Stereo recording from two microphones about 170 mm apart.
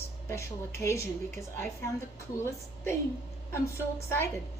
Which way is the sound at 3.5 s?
15° left (ahead or behind).